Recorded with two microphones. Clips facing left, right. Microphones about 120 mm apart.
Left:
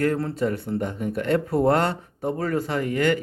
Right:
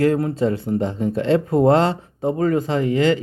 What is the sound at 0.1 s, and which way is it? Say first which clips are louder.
Speech: right 5 dB; 25° right (ahead or behind).